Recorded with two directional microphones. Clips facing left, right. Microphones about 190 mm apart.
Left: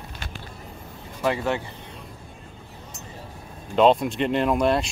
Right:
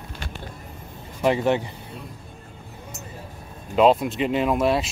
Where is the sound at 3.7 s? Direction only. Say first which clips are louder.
Even; 5° right (ahead or behind).